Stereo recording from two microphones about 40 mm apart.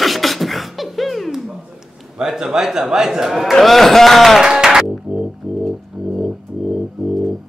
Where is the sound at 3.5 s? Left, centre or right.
Centre.